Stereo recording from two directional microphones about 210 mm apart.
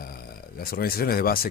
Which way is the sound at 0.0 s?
45° left (ahead or behind).